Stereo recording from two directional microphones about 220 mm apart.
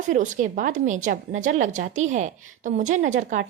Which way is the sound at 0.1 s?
35° right (ahead or behind).